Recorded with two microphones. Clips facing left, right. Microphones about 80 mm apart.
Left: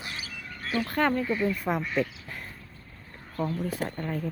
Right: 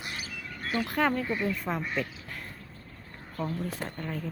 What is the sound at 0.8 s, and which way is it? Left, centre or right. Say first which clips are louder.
Speech: left 1 dB; centre.